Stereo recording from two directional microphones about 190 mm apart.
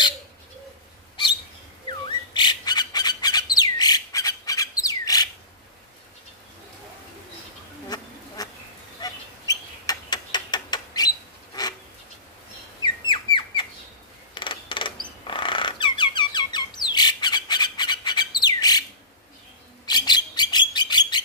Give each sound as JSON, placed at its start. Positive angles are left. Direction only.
{"t": 1.9, "sound": "bird", "side_deg": 25}
{"t": 8.4, "sound": "insect", "side_deg": 20}
{"t": 9.0, "sound": "bird", "side_deg": 20}
{"t": 12.8, "sound": "bird", "side_deg": 25}
{"t": 14.3, "sound": "a sound", "side_deg": 25}
{"t": 18.4, "sound": "bird", "side_deg": 20}
{"t": 19.9, "sound": "bird", "side_deg": 20}